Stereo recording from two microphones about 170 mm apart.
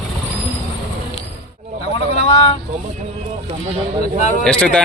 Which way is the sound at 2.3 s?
35° left (ahead or behind).